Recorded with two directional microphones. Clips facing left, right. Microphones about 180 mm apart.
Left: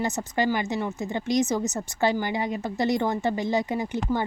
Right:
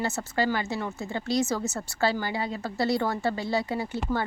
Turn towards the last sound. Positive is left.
turn(degrees=15)  # may be behind; listen again after turning